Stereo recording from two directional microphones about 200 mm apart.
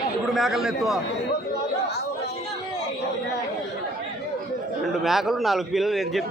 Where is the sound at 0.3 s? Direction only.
Centre (ahead or behind).